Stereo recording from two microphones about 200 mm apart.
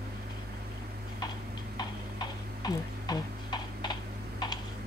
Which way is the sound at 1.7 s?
20° left (ahead or behind).